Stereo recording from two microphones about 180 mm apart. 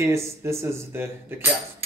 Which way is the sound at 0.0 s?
15° right (ahead or behind).